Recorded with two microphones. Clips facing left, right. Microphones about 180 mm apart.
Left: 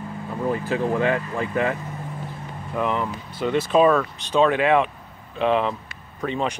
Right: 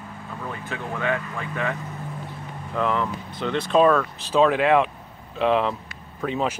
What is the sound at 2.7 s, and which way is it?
Speech, 15° left (ahead or behind).